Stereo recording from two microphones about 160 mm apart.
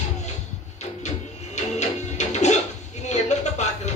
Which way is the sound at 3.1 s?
45° left (ahead or behind).